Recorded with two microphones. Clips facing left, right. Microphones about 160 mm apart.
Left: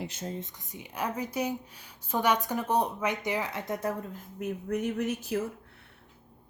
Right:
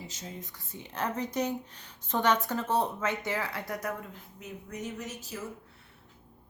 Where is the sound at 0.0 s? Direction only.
55° left (ahead or behind).